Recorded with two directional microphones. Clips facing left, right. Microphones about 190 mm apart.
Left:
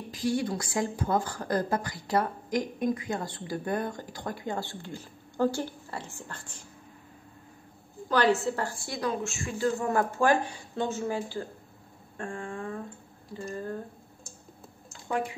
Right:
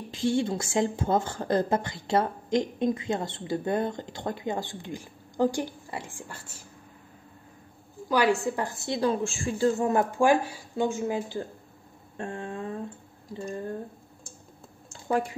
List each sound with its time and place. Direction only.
0.1 s a woman's voice: 25° right (ahead or behind); by 6.6 s 10° right (ahead or behind)
8.1 s a woman's voice: 10° right (ahead or behind)
14.9 s a sound: 35° right (ahead or behind)